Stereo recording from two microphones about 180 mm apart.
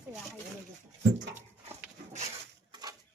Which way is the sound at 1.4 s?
40° right (ahead or behind).